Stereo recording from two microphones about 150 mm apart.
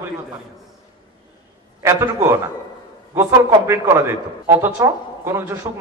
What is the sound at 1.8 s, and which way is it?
A man's voice, 20° right (ahead or behind).